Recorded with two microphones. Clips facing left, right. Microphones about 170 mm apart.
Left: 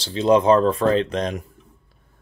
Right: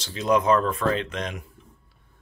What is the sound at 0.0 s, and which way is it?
Speech, 30° left (ahead or behind).